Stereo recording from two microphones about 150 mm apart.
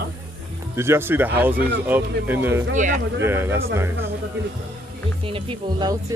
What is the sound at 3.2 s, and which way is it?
Speech, 15° right (ahead or behind).